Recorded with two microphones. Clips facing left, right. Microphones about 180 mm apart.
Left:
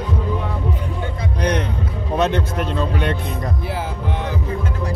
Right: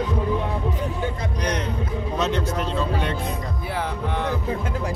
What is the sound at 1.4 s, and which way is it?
Vehicle, 60° left (ahead or behind).